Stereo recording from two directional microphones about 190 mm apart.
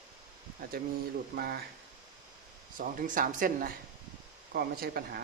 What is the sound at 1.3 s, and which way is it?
Speech, 55° right (ahead or behind).